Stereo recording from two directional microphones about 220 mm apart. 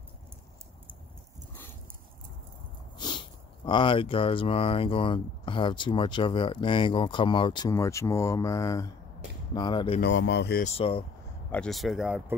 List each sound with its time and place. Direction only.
3.6 s speech: 20° left (ahead or behind)
9.9 s speech: 50° left (ahead or behind)
10.6 s speech: 25° left (ahead or behind)
11.5 s speech: centre (ahead or behind)